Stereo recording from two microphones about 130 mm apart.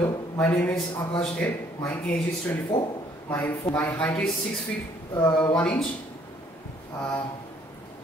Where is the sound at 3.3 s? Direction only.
15° left (ahead or behind).